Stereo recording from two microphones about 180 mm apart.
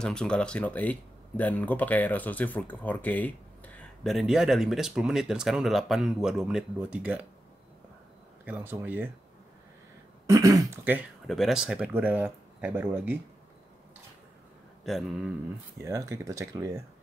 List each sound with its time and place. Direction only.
0.0 s speech: 5° left (ahead or behind)
8.5 s speech: 10° right (ahead or behind)
10.2 s speech: 20° right (ahead or behind)
11.2 s speech: centre (ahead or behind)
14.9 s speech: centre (ahead or behind)
15.8 s speech: 15° right (ahead or behind)